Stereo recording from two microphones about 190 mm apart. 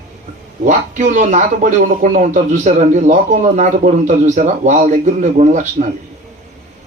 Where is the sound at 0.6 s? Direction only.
40° right (ahead or behind).